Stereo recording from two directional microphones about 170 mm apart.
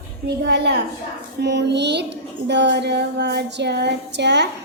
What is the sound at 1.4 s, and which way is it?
Speech, 90° right.